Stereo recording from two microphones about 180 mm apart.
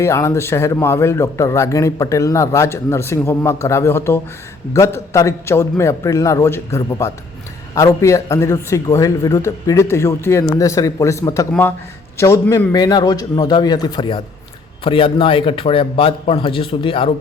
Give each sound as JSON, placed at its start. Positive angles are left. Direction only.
{"t": 0.0, "sound": "speech", "side_deg": 15}